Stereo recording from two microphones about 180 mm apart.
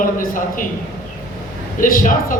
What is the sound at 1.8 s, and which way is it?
Speech, 50° left (ahead or behind).